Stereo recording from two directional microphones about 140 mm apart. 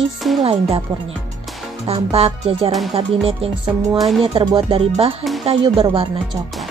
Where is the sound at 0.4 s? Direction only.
40° right (ahead or behind).